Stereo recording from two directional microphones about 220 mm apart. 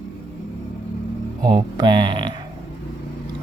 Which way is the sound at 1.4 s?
20° right (ahead or behind).